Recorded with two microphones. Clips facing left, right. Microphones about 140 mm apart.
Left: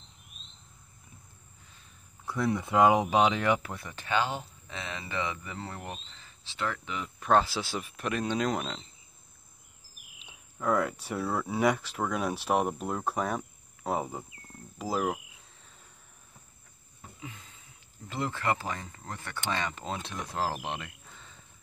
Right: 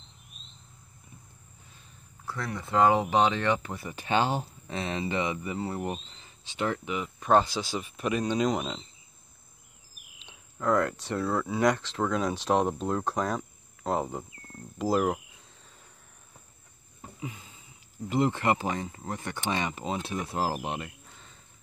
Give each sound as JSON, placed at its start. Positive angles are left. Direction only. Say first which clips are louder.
{"t": 2.2, "sound": "speech", "louder": "left 6 dB", "side_deg": 15}
{"t": 3.7, "sound": "speech", "louder": "right 4 dB", "side_deg": -5}
{"t": 4.1, "sound": "speech", "louder": "right 3 dB", "side_deg": -35}
{"t": 5.1, "sound": "speech", "louder": "right 5 dB", "side_deg": -15}
{"t": 6.9, "sound": "speech", "louder": "right 1 dB", "side_deg": -5}
{"t": 10.1, "sound": "speech", "louder": "right 1 dB", "side_deg": 5}
{"t": 18.1, "sound": "speech", "louder": "right 5 dB", "side_deg": -20}